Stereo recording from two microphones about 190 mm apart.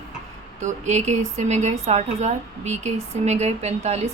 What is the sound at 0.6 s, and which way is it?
Speech, 40° right (ahead or behind).